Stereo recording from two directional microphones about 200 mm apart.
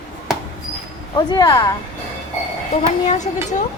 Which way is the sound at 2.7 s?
35° left (ahead or behind).